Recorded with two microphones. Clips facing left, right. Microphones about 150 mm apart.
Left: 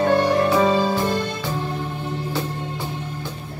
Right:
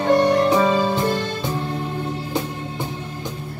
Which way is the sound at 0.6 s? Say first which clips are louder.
Even; 10° left (ahead or behind).